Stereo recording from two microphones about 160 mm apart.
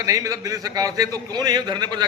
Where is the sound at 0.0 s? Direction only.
20° right (ahead or behind).